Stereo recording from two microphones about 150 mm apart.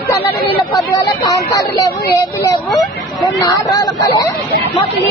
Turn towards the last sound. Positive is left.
turn(degrees=25)  # may be behind; listen again after turning